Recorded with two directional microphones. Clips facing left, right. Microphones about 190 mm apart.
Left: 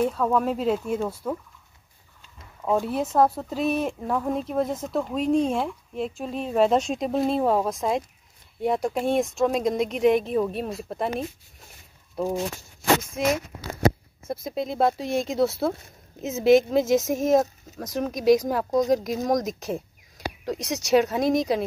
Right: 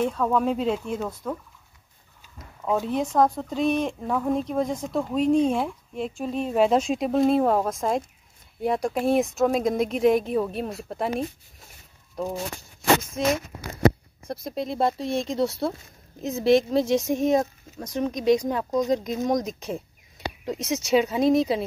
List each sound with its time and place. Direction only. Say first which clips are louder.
0.0 s speech: even; 5° left (ahead or behind)
2.6 s speech: even; 5° left (ahead or behind)
14.2 s speech: left 1 dB; centre (ahead or behind)